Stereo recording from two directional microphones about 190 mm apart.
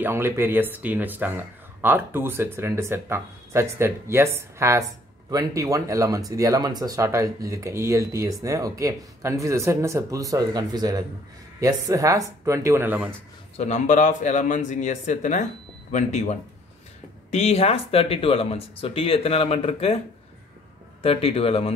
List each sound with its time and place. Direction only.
0.0 s speech: 10° right (ahead or behind)
13.6 s speech: 40° left (ahead or behind)
21.0 s speech: 30° left (ahead or behind)